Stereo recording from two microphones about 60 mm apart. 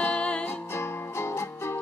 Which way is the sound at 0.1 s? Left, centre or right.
Centre.